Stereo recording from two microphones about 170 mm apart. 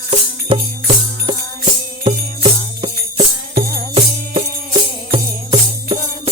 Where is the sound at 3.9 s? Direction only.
35° right (ahead or behind).